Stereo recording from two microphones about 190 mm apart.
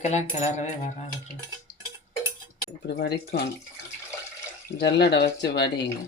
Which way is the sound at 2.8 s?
60° left (ahead or behind).